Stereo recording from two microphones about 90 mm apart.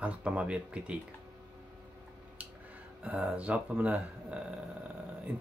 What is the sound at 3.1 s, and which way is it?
Speech, 15° right (ahead or behind).